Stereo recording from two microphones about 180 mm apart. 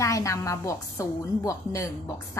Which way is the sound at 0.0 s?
20° left (ahead or behind).